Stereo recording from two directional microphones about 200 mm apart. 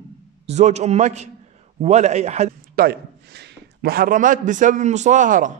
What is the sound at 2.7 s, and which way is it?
A man's voice, 50° right (ahead or behind).